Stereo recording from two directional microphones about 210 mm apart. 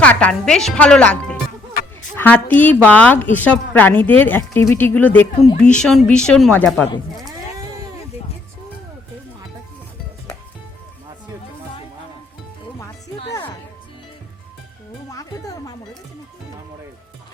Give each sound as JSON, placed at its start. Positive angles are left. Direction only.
{"t": 0.0, "sound": "a woman's voice", "side_deg": 5}
{"t": 13.3, "sound": "music", "side_deg": 15}
{"t": 15.1, "sound": "music", "side_deg": 15}